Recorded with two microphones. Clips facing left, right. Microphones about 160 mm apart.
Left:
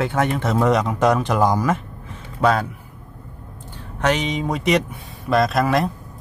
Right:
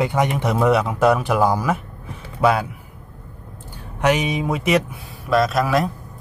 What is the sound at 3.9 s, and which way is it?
A man's voice, 10° right (ahead or behind).